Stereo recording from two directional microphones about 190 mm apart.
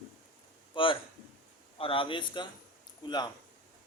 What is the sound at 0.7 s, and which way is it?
A man's voice, 25° left (ahead or behind).